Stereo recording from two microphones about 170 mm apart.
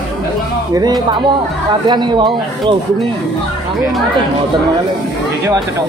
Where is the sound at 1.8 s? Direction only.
25° right (ahead or behind).